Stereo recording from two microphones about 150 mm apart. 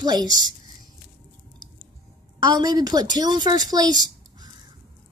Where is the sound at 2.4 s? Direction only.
25° right (ahead or behind).